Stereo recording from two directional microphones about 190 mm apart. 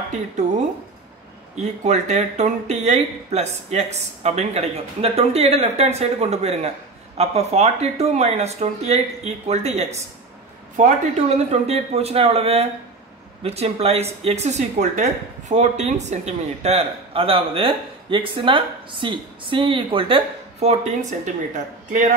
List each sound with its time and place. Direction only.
1.6 s speech: 35° right (ahead or behind)